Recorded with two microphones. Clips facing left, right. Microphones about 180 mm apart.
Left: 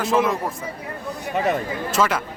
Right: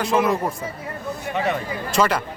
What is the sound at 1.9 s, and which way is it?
Speech, centre (ahead or behind).